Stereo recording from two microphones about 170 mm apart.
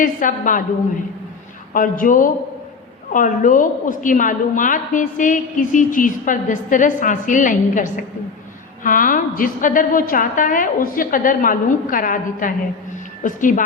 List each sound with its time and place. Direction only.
0.0 s a woman's voice: 50° left (ahead or behind)
1.7 s a woman's voice: 50° left (ahead or behind)